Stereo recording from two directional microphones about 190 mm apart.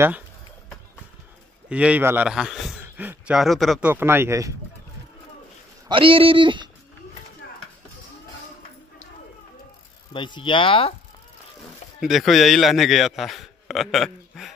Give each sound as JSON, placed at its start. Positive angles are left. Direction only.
{"t": 1.7, "sound": "a man's voice", "side_deg": -5}
{"t": 3.9, "sound": "speech", "side_deg": -10}
{"t": 5.9, "sound": "speech", "side_deg": -25}
{"t": 10.1, "sound": "speech", "side_deg": 25}
{"t": 12.0, "sound": "a man's voice", "side_deg": 0}